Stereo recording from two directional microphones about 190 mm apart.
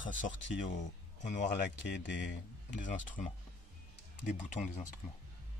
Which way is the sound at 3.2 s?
45° left (ahead or behind).